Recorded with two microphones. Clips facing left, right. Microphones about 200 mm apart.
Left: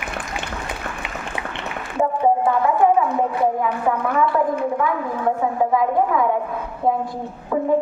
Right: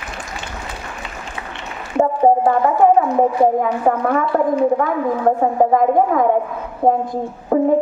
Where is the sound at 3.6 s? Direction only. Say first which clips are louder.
Right 4 dB; 50° right (ahead or behind).